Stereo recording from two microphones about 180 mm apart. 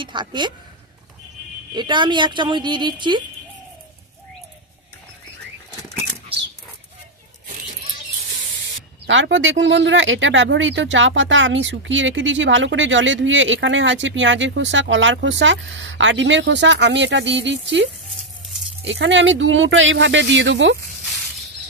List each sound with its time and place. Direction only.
0.0 s speech: 25° right (ahead or behind)
1.7 s speech: 25° right (ahead or behind)
9.0 s speech: 90° right
18.9 s speech: 85° right